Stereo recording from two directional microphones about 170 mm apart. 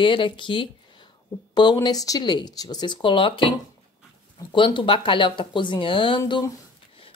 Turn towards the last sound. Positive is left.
turn(degrees=25)  # may be behind; listen again after turning